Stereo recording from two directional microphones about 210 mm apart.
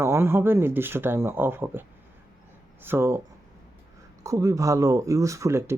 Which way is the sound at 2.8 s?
10° right (ahead or behind).